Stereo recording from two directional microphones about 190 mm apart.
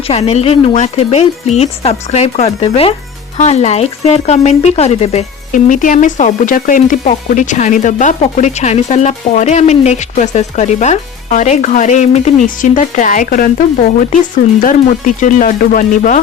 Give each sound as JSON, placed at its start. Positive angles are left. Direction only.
{"t": 0.1, "sound": "speech", "side_deg": 35}
{"t": 14.6, "sound": "speech", "side_deg": 45}